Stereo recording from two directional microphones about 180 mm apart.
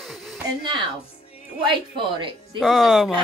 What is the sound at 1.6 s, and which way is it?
Speech, 25° right (ahead or behind).